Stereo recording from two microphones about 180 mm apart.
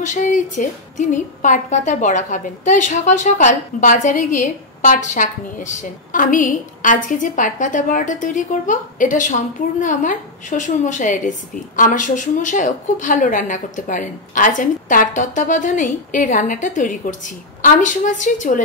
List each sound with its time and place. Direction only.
0.0 s a woman's voice: 45° left (ahead or behind)